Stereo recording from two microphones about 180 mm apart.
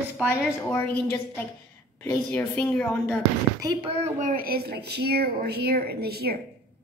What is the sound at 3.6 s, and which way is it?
Speech, 30° right (ahead or behind).